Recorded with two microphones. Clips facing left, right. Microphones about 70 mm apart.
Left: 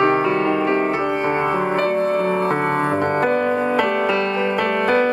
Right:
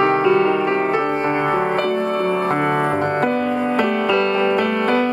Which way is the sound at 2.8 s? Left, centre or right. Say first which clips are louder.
Right 1 dB; right.